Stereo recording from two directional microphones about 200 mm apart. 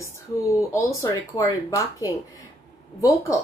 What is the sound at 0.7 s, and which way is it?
A woman's voice, 15° left (ahead or behind).